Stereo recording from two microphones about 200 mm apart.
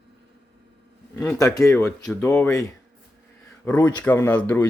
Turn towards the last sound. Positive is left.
turn(degrees=10)  # may be behind; listen again after turning